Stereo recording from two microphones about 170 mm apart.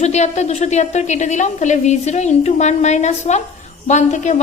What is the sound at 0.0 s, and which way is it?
A woman's voice, 40° left (ahead or behind).